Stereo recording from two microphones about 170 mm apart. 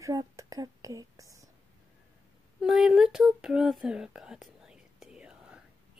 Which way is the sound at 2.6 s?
Centre (ahead or behind).